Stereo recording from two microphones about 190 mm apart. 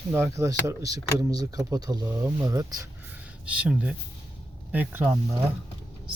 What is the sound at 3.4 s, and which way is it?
Speech, 5° right (ahead or behind).